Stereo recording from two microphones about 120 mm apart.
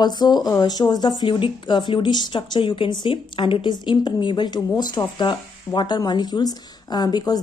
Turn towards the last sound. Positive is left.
turn(degrees=35)  # may be behind; listen again after turning